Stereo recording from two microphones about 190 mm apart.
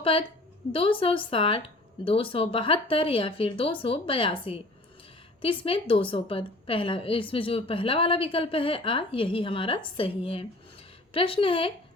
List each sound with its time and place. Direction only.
0.0 s a woman's voice: 30° left (ahead or behind)